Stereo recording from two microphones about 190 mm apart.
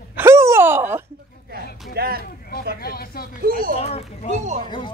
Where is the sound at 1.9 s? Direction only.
50° right (ahead or behind).